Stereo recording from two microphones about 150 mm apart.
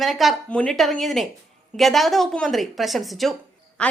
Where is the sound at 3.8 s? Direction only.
5° left (ahead or behind).